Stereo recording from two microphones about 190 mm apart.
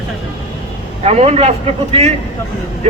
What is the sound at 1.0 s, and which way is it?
Speech, 35° right (ahead or behind).